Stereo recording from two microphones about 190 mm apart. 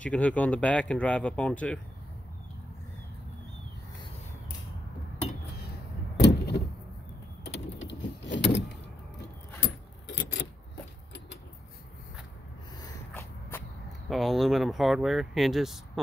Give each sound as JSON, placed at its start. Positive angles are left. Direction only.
{"t": 0.0, "sound": "speech", "side_deg": 5}
{"t": 6.1, "sound": "door", "side_deg": 60}
{"t": 7.4, "sound": "power windows", "side_deg": 70}
{"t": 12.8, "sound": "a sound", "side_deg": 15}
{"t": 14.0, "sound": "speech", "side_deg": 0}